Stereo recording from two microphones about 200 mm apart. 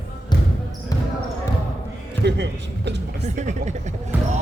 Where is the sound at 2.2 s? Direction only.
60° right (ahead or behind).